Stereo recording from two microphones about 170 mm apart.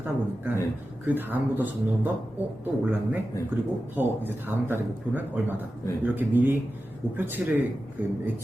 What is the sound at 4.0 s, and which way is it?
A man's voice, 10° right (ahead or behind).